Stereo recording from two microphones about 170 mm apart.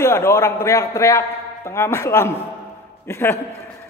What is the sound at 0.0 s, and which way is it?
A man's voice, 15° left (ahead or behind).